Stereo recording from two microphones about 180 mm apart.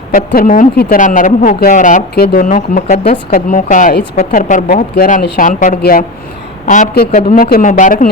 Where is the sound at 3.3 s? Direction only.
45° left (ahead or behind).